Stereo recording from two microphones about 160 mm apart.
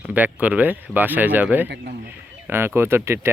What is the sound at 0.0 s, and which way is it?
Speech, 10° right (ahead or behind).